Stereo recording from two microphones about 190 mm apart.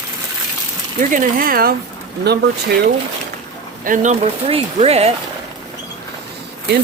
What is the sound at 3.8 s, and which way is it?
Speech, 45° right (ahead or behind).